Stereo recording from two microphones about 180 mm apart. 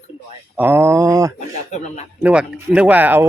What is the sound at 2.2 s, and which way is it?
Speech, 5° right (ahead or behind).